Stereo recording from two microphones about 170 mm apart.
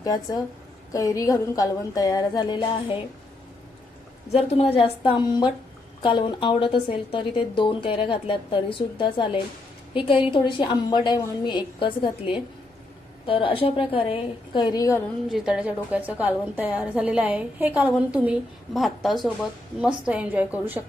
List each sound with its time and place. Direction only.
0.0 s speech: 20° left (ahead or behind)
4.3 s a woman's voice: 35° left (ahead or behind); by 15.0 s 20° left (ahead or behind)
15.3 s a woman's voice: 5° right (ahead or behind)